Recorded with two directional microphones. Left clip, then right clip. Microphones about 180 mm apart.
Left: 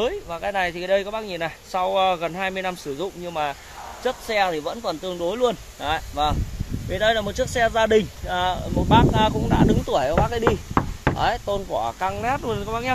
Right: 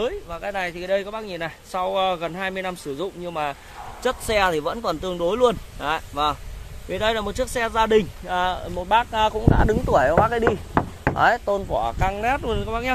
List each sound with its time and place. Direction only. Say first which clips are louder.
0.0 s speech: left 2 dB; 15° left (ahead or behind); by 3.1 s 5° right (ahead or behind)
3.3 s speech: left 1 dB; 15° right (ahead or behind)
4.0 s speech: right 1 dB; 45° right (ahead or behind); by 6.3 s 25° right (ahead or behind)
6.9 s speech: left 2 dB; 15° right (ahead or behind)
9.5 s speech: right 1 dB; 25° right (ahead or behind)
9.9 s speech: right 6 dB; 10° right (ahead or behind)
11.1 s speech: right 6 dB; 25° right (ahead or behind)